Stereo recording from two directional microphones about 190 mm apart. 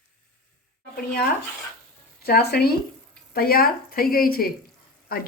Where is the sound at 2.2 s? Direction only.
55° left (ahead or behind).